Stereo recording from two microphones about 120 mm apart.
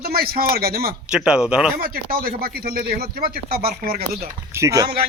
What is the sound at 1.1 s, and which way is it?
Speech, 5° right (ahead or behind).